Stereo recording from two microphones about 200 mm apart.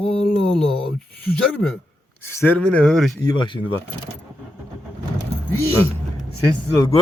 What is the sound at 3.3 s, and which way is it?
Speech, 25° left (ahead or behind).